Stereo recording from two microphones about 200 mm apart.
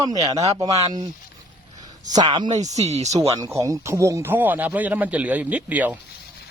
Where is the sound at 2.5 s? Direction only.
35° right (ahead or behind).